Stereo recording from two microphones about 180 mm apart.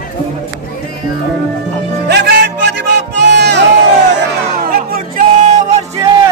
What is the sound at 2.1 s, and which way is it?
Music, 70° right (ahead or behind).